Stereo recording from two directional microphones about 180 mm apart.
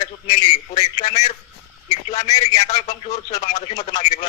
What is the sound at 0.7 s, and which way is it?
Speech, 40° left (ahead or behind).